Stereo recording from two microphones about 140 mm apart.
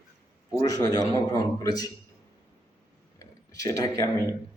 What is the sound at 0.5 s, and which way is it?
Speech, 25° left (ahead or behind).